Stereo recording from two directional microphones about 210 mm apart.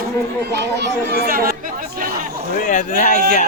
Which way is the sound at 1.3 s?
45° right (ahead or behind).